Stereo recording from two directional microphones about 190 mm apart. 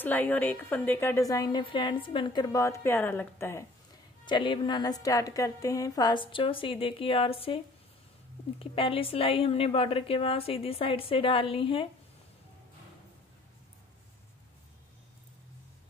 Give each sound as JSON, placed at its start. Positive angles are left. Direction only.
{"t": 0.0, "sound": "a woman's voice", "side_deg": 10}
{"t": 4.3, "sound": "a woman's voice", "side_deg": 25}